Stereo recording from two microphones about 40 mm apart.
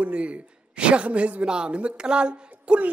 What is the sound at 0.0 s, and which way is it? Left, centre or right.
Speech, right.